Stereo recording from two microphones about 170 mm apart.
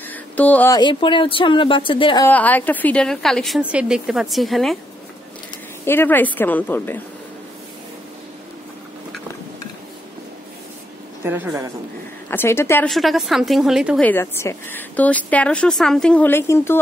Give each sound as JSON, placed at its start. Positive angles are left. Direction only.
{"t": 0.1, "sound": "a sound", "side_deg": 10}
{"t": 0.7, "sound": "speech", "side_deg": 30}
{"t": 2.2, "sound": "a woman's voice", "side_deg": 10}
{"t": 5.9, "sound": "a woman's voice", "side_deg": 10}
{"t": 11.2, "sound": "a woman's voice", "side_deg": -15}
{"t": 12.3, "sound": "a woman's voice", "side_deg": 15}
{"t": 12.8, "sound": "a woman's voice", "side_deg": 0}
{"t": 14.0, "sound": "a woman's voice", "side_deg": 15}